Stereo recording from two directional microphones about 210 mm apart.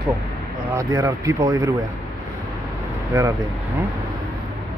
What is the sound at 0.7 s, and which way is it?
Speech, 15° right (ahead or behind).